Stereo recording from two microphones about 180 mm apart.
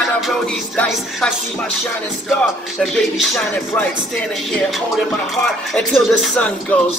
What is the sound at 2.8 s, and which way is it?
Music, centre (ahead or behind).